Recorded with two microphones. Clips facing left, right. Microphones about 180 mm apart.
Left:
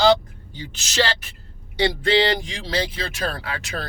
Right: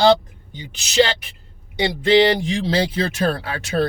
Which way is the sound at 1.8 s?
20° right (ahead or behind).